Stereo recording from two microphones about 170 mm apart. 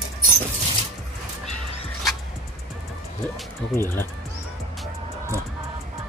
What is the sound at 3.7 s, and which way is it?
Speech, 15° left (ahead or behind).